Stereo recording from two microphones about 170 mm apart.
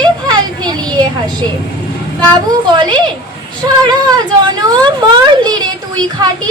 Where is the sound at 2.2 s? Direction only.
25° right (ahead or behind).